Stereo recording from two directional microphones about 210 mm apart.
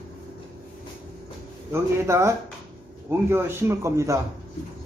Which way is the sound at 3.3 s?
10° right (ahead or behind).